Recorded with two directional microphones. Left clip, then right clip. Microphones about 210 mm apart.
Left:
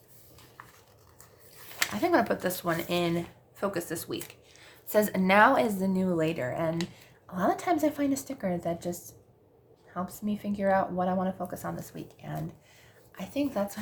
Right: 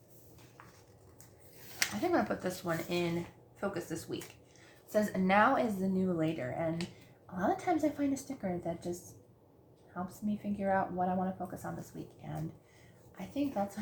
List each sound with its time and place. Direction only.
2.0 s speech: 45° left (ahead or behind)